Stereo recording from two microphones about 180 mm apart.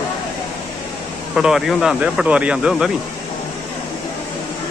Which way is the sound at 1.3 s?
5° right (ahead or behind).